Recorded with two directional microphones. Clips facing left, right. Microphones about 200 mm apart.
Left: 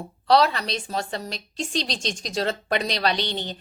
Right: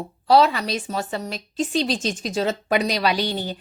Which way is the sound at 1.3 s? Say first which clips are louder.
Right 6 dB; 5° right (ahead or behind).